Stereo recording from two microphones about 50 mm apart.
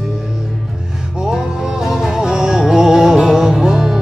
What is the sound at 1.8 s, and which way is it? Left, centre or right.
Music, centre.